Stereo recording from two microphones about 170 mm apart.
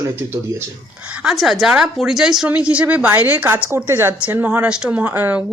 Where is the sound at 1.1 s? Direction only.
5° right (ahead or behind).